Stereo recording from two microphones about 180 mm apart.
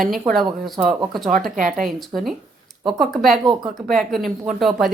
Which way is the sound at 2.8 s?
Centre (ahead or behind).